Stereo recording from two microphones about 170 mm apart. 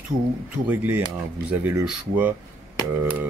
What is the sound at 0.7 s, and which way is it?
Speech, 10° right (ahead or behind).